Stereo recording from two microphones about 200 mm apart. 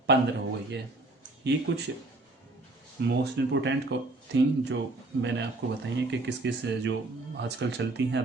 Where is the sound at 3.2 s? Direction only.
65° right (ahead or behind).